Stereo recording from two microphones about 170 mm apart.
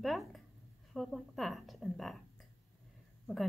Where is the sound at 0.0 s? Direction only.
Centre (ahead or behind).